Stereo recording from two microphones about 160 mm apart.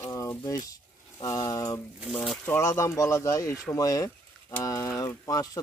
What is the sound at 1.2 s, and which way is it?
Speech, 25° left (ahead or behind).